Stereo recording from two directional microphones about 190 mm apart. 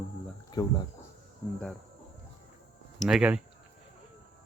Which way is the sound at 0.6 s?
20° left (ahead or behind).